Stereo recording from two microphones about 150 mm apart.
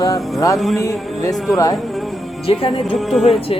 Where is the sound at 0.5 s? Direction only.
Centre (ahead or behind).